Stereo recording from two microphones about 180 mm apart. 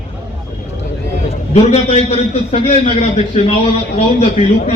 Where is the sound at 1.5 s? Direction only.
35° left (ahead or behind).